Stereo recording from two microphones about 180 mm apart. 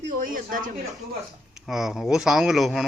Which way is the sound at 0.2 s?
50° right (ahead or behind).